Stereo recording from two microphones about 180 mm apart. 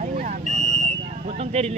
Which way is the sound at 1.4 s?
35° right (ahead or behind).